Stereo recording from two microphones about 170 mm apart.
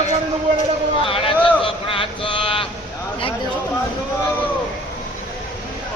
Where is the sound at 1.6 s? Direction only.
30° left (ahead or behind).